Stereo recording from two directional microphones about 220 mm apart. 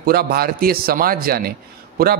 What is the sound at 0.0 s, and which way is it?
A man's voice, 45° right (ahead or behind).